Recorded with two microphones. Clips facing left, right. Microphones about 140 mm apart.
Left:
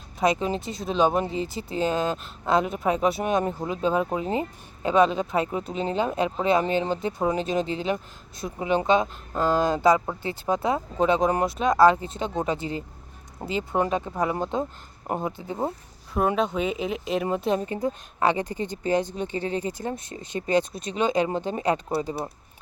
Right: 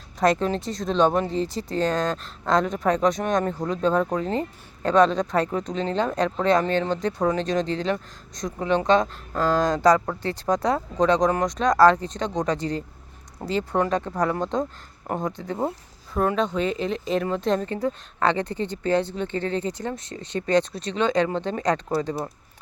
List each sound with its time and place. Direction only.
0.2 s speech: 5° left (ahead or behind)
15.0 s speech: 15° left (ahead or behind)
15.3 s speech: 5° left (ahead or behind)